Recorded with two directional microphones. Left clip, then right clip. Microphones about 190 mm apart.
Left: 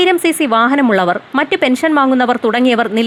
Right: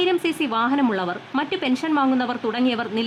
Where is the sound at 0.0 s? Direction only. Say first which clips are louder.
Left 9 dB; 35° left (ahead or behind).